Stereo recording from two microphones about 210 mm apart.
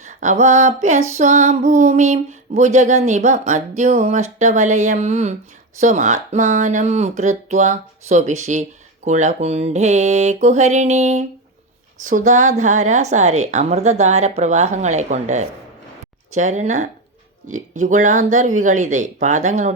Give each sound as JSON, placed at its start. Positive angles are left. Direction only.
{"t": 0.0, "sound": "female singing", "side_deg": -35}